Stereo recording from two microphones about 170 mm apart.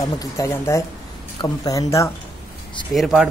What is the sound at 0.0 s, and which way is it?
Speech, 20° left (ahead or behind).